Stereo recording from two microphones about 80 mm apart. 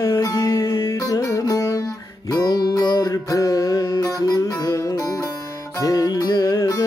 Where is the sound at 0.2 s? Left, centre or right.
Left.